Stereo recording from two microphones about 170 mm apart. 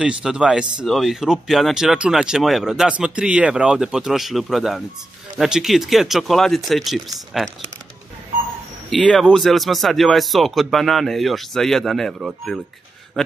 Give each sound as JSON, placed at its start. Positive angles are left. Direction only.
{"t": 0.0, "sound": "speech", "side_deg": -5}
{"t": 8.9, "sound": "speech", "side_deg": 0}